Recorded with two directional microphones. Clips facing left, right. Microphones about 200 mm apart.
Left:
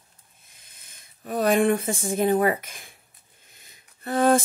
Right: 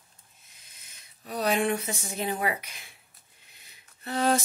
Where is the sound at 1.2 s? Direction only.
50° left (ahead or behind).